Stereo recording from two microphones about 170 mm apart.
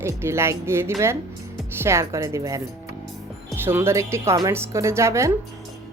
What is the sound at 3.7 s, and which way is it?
Speech, 15° right (ahead or behind).